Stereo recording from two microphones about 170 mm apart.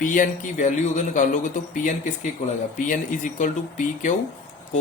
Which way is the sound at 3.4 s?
50° left (ahead or behind).